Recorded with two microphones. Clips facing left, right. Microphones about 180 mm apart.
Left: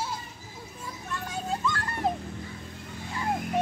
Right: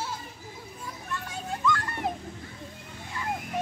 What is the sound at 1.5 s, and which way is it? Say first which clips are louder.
Music: right 3 dB; 30° left (ahead or behind).